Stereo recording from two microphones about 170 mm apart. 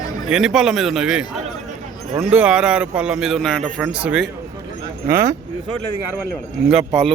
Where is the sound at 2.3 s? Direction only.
5° right (ahead or behind).